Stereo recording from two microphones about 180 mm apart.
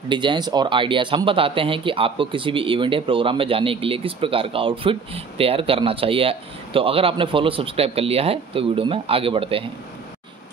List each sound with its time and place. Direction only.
0.1 s speech: 25° right (ahead or behind)